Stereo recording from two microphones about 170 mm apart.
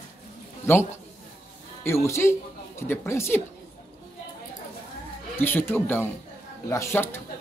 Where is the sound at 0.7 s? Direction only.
15° left (ahead or behind).